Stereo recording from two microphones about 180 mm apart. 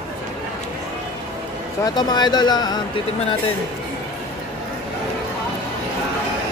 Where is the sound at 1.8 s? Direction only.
25° left (ahead or behind).